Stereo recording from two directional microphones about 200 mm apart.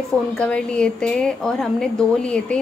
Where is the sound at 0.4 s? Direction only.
5° left (ahead or behind).